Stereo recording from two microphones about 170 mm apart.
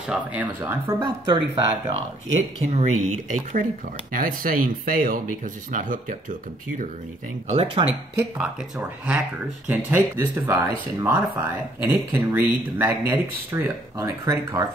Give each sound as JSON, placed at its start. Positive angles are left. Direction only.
{"t": 0.1, "sound": "speech", "side_deg": -10}
{"t": 0.8, "sound": "speech", "side_deg": -25}
{"t": 2.3, "sound": "speech", "side_deg": -45}
{"t": 7.8, "sound": "speech", "side_deg": -25}
{"t": 8.2, "sound": "speech", "side_deg": -5}